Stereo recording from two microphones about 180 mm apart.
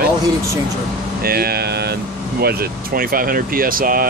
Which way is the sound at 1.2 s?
60° right (ahead or behind).